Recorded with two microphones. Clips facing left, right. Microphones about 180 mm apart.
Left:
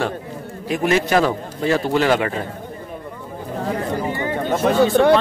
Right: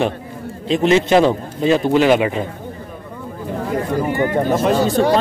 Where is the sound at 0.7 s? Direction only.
25° right (ahead or behind).